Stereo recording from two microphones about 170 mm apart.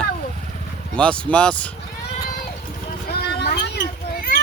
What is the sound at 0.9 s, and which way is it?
Speech, 5° left (ahead or behind).